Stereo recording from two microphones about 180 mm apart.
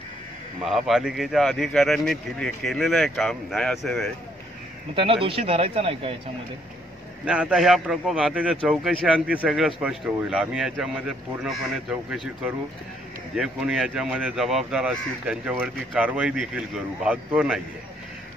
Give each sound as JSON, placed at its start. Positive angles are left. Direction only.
{"t": 0.6, "sound": "a man's voice", "side_deg": 0}
{"t": 4.9, "sound": "speech", "side_deg": -30}
{"t": 7.2, "sound": "a man's voice", "side_deg": -5}